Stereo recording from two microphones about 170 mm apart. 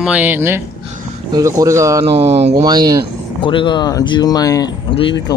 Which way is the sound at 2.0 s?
35° right (ahead or behind).